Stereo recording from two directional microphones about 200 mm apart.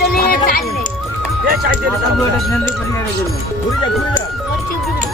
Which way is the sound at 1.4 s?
45° right (ahead or behind).